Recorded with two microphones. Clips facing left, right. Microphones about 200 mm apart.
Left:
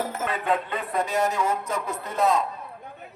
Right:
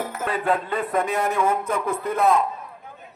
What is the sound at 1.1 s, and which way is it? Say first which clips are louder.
Speech: even; 55° right (ahead or behind).